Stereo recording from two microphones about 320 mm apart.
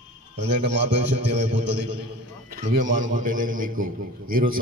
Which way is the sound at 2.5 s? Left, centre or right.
Right.